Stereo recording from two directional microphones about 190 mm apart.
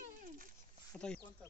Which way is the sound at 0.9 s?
5° left (ahead or behind).